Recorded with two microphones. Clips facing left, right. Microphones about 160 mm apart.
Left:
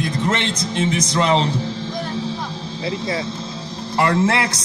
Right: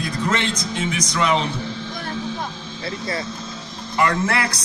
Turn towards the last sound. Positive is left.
turn(degrees=25)  # may be behind; listen again after turning